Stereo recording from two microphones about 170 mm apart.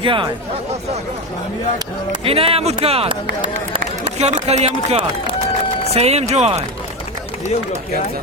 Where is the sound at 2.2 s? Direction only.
35° right (ahead or behind).